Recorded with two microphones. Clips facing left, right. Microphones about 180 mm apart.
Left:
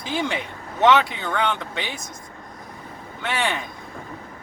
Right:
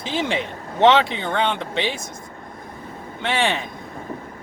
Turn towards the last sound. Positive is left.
turn(degrees=-25)  # may be behind; listen again after turning